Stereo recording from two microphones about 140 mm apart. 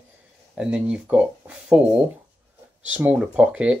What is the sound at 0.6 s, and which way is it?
Speech, 5° right (ahead or behind).